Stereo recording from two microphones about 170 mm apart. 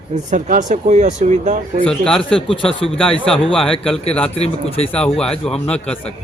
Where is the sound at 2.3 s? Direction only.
30° left (ahead or behind).